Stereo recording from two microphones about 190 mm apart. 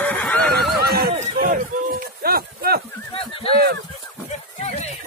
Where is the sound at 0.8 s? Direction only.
55° right (ahead or behind).